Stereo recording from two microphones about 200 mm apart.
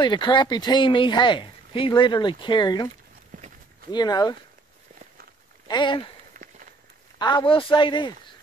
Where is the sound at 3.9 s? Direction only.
20° left (ahead or behind).